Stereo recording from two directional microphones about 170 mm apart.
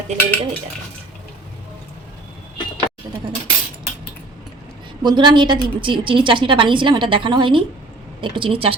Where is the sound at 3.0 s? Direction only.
20° right (ahead or behind).